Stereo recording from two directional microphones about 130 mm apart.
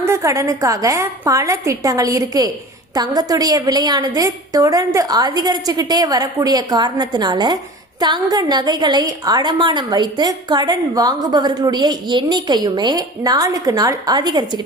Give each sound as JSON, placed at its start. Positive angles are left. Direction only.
{"t": 0.0, "sound": "a woman's voice", "side_deg": -25}